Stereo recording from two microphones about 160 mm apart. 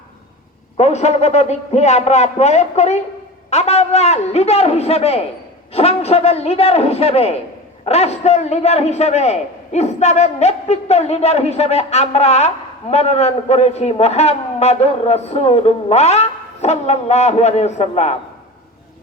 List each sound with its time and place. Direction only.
0.8 s a man's voice: 45° left (ahead or behind)